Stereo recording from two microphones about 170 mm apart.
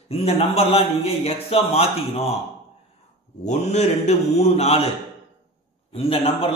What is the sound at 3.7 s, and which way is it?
Speech, 40° left (ahead or behind).